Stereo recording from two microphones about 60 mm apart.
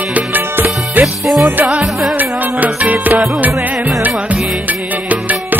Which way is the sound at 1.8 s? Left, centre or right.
Centre.